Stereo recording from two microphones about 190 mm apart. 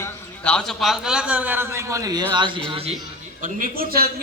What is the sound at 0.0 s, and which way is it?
A man's voice, 5° left (ahead or behind).